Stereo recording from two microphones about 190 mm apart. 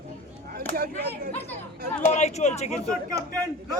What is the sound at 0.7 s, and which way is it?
Speech, 50° right (ahead or behind).